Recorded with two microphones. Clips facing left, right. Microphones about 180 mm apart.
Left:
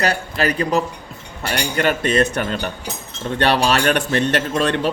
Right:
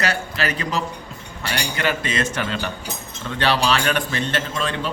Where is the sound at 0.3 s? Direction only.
35° left (ahead or behind).